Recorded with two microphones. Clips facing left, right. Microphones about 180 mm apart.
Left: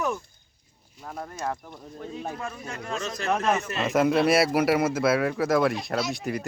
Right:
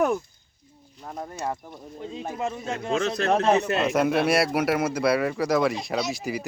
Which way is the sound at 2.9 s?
70° right (ahead or behind).